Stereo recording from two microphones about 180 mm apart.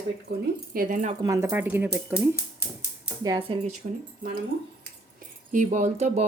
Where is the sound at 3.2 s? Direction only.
25° right (ahead or behind).